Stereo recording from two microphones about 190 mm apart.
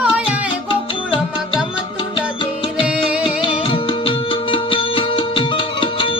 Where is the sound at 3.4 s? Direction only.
25° left (ahead or behind).